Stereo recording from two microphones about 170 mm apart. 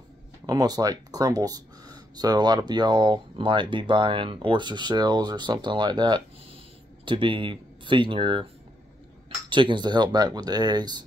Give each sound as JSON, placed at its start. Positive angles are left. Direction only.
{"t": 0.5, "sound": "speech", "side_deg": -20}
{"t": 9.5, "sound": "speech", "side_deg": -30}